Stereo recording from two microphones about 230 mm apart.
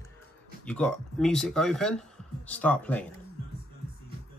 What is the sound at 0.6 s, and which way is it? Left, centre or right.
Speech, centre.